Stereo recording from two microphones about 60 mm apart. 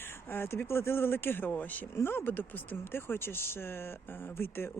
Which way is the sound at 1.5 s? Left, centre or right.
Left.